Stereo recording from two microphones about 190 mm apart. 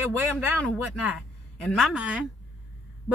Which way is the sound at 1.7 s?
Centre (ahead or behind).